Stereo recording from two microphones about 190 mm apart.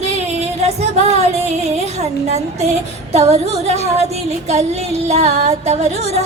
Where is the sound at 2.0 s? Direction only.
35° right (ahead or behind).